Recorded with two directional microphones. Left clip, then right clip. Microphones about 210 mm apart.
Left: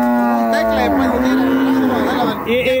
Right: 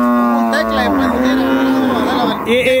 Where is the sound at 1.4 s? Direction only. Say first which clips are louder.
Right 1 dB; 45° right (ahead or behind).